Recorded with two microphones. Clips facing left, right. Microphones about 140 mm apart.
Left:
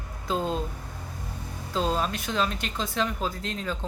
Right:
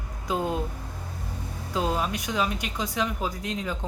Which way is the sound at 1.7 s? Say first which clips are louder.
Even; 15° right (ahead or behind).